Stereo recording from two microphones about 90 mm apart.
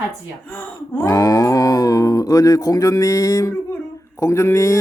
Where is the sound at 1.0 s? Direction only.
40° left (ahead or behind).